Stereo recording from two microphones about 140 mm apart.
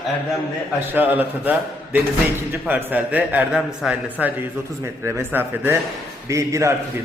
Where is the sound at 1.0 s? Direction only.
10° right (ahead or behind).